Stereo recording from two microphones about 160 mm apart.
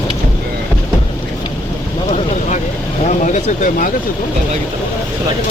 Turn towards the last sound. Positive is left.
turn(degrees=50)  # may be behind; listen again after turning